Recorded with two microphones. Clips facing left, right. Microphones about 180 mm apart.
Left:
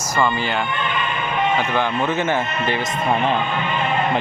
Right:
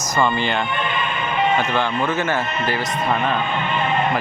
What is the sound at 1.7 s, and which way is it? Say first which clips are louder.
A man's voice: even; 15° left (ahead or behind).